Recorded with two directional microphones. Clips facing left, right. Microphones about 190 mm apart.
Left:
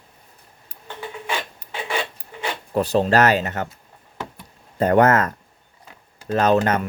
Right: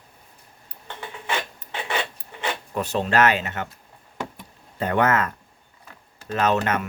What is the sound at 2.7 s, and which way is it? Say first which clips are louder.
Speech: left 5 dB; 35° left (ahead or behind).